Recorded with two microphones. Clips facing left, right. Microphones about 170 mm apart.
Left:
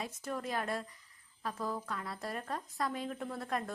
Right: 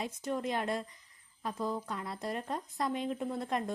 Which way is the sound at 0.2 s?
20° right (ahead or behind).